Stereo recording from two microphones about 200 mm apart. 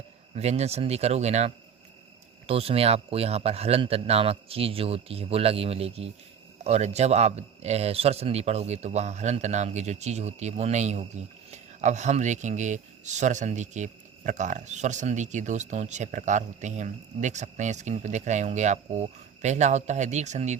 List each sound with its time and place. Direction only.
0.3 s a man's voice: 30° right (ahead or behind)